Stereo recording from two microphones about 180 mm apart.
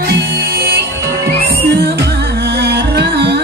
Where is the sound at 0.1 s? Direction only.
65° right (ahead or behind).